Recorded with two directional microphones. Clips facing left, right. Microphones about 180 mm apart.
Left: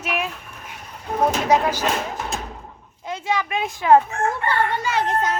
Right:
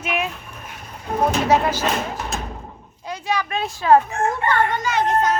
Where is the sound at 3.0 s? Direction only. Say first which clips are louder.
Even; 20° left (ahead or behind).